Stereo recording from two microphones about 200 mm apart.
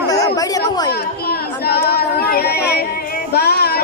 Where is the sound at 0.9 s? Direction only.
50° left (ahead or behind).